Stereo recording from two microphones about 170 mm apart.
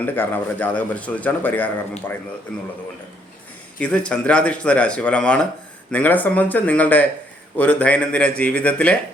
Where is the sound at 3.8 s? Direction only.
5° left (ahead or behind).